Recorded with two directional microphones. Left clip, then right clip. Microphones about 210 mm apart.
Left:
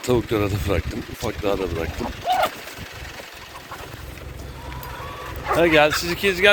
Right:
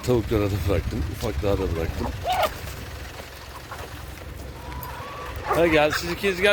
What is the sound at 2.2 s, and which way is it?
Boat, 30° right (ahead or behind).